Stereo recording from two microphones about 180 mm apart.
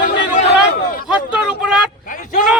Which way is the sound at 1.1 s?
5° right (ahead or behind).